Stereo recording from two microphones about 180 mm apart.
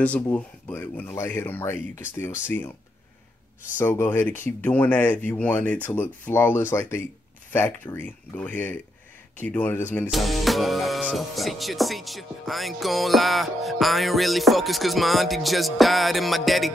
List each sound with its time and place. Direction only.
0.0 s speech: 10° left (ahead or behind)
3.7 s speech: 15° left (ahead or behind)
10.0 s music: centre (ahead or behind)